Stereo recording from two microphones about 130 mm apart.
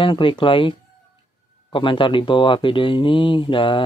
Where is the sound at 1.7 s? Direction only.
40° left (ahead or behind).